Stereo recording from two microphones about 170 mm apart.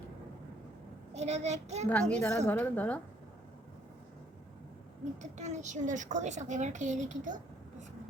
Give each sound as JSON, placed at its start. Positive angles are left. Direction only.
{"t": 1.1, "sound": "a child's voice", "side_deg": -40}
{"t": 1.9, "sound": "a woman's voice", "side_deg": 10}
{"t": 5.2, "sound": "a child's voice", "side_deg": -45}